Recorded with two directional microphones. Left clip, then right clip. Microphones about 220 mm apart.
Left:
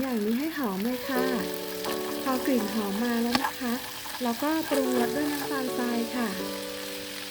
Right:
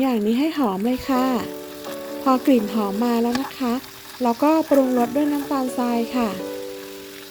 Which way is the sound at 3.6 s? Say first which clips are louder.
Right 6 dB; 30° right (ahead or behind).